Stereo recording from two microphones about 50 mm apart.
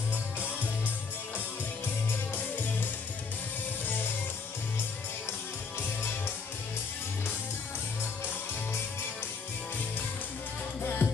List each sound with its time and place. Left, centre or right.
10.8 s music: left